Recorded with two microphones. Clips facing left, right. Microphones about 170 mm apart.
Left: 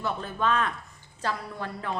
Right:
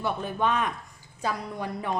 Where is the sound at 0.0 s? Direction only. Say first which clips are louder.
Right 2 dB; 15° right (ahead or behind).